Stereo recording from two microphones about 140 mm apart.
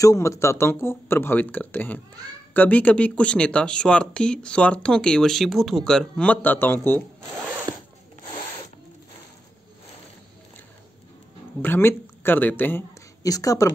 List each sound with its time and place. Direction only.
0.0 s speech: 20° left (ahead or behind)
7.7 s zipper: 30° right (ahead or behind)
11.6 s speech: 15° left (ahead or behind)
13.2 s a woman's voice: 25° left (ahead or behind)